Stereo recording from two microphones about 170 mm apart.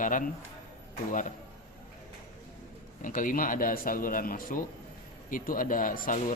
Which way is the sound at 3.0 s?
50° left (ahead or behind).